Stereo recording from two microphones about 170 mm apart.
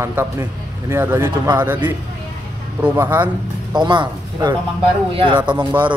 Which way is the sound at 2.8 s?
10° right (ahead or behind).